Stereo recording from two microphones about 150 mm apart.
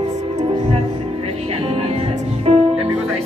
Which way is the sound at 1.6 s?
45° right (ahead or behind).